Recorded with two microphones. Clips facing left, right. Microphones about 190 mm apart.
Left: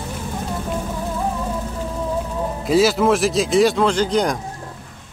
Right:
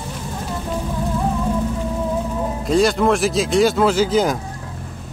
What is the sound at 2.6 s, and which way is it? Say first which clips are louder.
A man's voice: left 1 dB; 5° left (ahead or behind).